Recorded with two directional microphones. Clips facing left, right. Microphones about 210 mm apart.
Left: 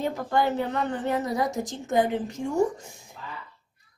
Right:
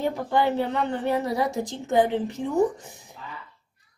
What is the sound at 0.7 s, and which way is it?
Speech, 15° left (ahead or behind).